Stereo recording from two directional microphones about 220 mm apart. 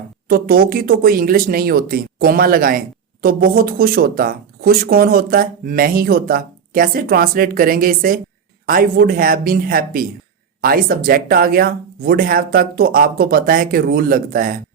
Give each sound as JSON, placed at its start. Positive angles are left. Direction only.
{"t": 0.3, "sound": "speech", "side_deg": -40}